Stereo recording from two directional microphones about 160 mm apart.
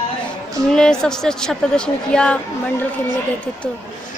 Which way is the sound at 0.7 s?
5° left (ahead or behind).